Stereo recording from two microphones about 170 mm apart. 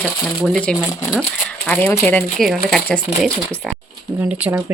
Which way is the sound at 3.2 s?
5° left (ahead or behind).